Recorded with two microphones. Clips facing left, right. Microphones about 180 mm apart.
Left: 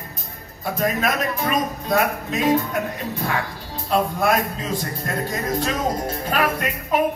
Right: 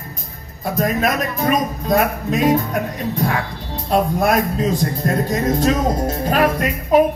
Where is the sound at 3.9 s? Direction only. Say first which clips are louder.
Right 3 dB; 40° right (ahead or behind).